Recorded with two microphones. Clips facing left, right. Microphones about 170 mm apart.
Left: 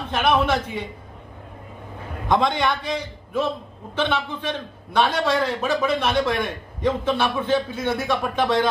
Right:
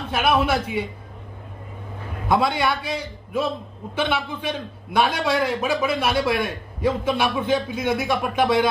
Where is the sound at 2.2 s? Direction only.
5° right (ahead or behind).